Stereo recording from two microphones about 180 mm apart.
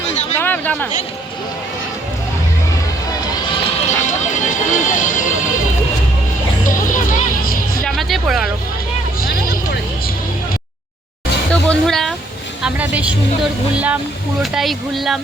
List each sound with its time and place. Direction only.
0.3 s a sound: 10° left (ahead or behind)
3.8 s music: 40° left (ahead or behind)
6.7 s music: 50° left (ahead or behind)
7.9 s music: centre (ahead or behind)
11.5 s speech: 5° left (ahead or behind)
12.6 s speech: 10° right (ahead or behind)